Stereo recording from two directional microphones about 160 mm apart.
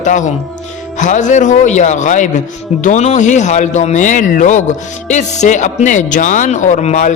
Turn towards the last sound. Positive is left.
turn(degrees=45)  # may be behind; listen again after turning